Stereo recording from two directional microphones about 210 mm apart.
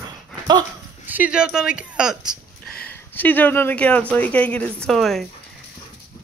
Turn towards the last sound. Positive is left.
turn(degrees=0)  # may be behind; listen again after turning